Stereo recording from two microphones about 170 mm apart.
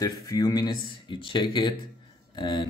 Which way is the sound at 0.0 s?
20° left (ahead or behind).